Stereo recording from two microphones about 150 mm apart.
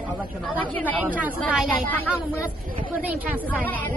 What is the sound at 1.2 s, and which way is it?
Speech, 10° right (ahead or behind).